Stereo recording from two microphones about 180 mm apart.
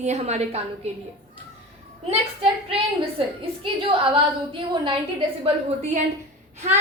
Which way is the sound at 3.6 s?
30° right (ahead or behind).